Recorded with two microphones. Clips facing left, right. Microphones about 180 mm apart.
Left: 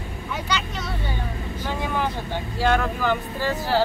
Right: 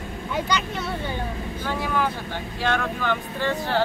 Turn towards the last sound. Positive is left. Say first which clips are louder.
# left 1 dB
turn(degrees=5)  # may be behind; listen again after turning